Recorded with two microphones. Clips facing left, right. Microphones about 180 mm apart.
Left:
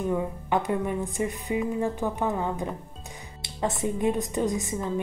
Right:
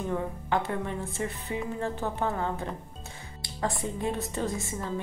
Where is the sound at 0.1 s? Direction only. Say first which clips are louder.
Even; 15° left (ahead or behind).